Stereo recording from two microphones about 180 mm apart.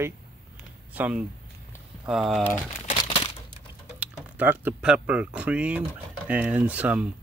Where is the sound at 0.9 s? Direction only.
10° right (ahead or behind).